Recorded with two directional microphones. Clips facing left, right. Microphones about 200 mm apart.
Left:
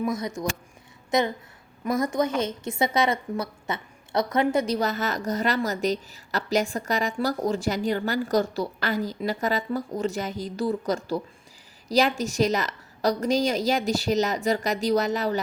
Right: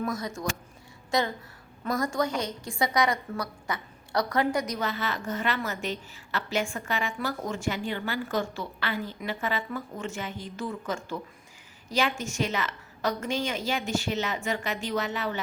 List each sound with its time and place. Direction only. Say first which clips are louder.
0.0 s a woman's voice: left 4 dB; 20° left (ahead or behind); by 15.4 s 40° left (ahead or behind)